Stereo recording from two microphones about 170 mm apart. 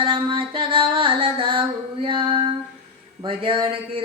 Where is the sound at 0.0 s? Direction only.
30° right (ahead or behind).